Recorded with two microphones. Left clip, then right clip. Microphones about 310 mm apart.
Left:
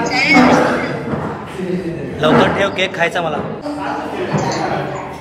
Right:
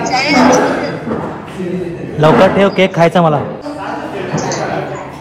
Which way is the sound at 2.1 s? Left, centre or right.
Centre.